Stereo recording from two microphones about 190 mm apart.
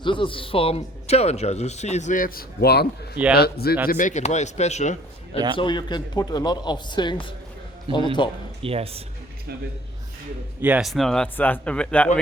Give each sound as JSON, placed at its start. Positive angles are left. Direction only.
{"t": 0.0, "sound": "speech", "side_deg": 25}
{"t": 3.8, "sound": "speech", "side_deg": 45}
{"t": 5.5, "sound": "a man's voice", "side_deg": 25}
{"t": 8.6, "sound": "speech", "side_deg": -30}
{"t": 10.6, "sound": "speech", "side_deg": -5}